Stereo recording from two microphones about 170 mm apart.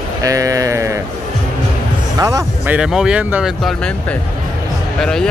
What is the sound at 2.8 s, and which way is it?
Speech, 5° right (ahead or behind).